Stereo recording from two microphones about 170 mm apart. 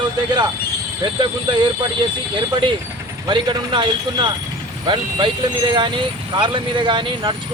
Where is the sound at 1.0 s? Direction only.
25° right (ahead or behind).